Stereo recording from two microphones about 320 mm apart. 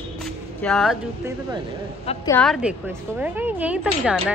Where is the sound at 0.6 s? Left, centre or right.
Centre.